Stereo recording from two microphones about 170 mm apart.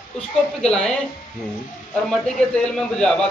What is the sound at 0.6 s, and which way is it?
Speech, 5° left (ahead or behind).